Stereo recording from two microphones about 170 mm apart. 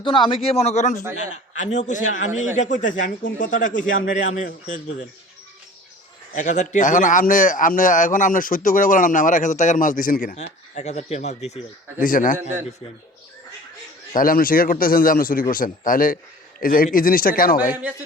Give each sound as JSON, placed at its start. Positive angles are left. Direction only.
{"t": 0.0, "sound": "a man's voice", "side_deg": 30}
{"t": 6.3, "sound": "a man's voice", "side_deg": 45}
{"t": 12.0, "sound": "a man's voice", "side_deg": 50}
{"t": 14.1, "sound": "a man's voice", "side_deg": 55}